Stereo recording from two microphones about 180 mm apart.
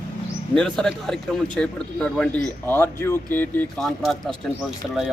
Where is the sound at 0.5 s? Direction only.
5° left (ahead or behind).